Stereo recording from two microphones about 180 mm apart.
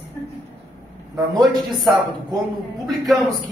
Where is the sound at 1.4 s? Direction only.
Centre (ahead or behind).